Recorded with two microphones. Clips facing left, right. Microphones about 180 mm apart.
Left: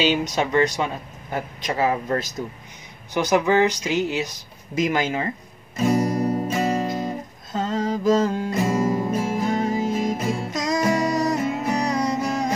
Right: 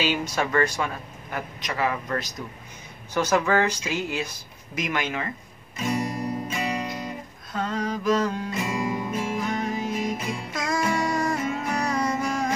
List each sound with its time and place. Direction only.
0.0 s speech: 20° left (ahead or behind)
3.2 s speech: 15° left (ahead or behind)
5.8 s guitar: 35° left (ahead or behind)
7.5 s music: 25° left (ahead or behind)
10.5 s music: 20° left (ahead or behind)
10.8 s music: 35° left (ahead or behind)
11.7 s music: 15° left (ahead or behind)